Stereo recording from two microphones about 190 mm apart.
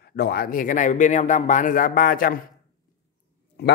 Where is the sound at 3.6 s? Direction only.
60° left (ahead or behind).